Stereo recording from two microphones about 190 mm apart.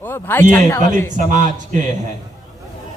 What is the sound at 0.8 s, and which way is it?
A man's voice, 40° right (ahead or behind).